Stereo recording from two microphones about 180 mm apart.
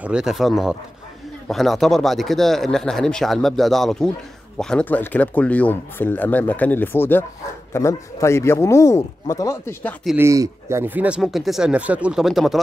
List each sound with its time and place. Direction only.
0.0 s speech: 5° right (ahead or behind); by 9.9 s 15° left (ahead or behind)
10.1 s speech: 15° right (ahead or behind)